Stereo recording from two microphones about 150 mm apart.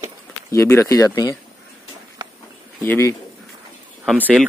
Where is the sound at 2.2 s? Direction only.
30° right (ahead or behind).